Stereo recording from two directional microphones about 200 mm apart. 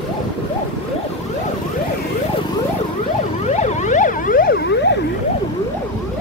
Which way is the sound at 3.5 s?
35° left (ahead or behind).